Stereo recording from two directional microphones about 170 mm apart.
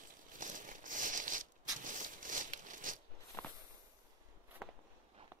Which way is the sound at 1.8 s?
50° right (ahead or behind).